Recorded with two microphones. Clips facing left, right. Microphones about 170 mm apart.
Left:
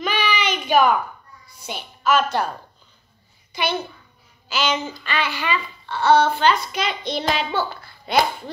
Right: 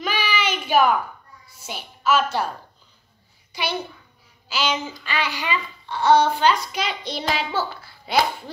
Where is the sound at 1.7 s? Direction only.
5° right (ahead or behind).